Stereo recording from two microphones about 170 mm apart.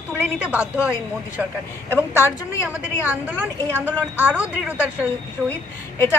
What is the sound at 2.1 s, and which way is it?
Speech, 10° right (ahead or behind).